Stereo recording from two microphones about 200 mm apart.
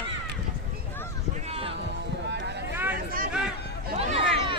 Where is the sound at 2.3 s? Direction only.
60° right (ahead or behind).